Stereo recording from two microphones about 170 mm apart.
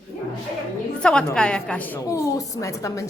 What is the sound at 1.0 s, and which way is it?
A woman's voice, 5° left (ahead or behind).